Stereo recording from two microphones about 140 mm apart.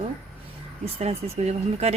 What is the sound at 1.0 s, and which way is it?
Speech, 50° right (ahead or behind).